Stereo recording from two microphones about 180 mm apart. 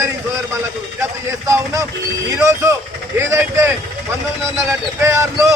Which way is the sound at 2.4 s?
15° right (ahead or behind).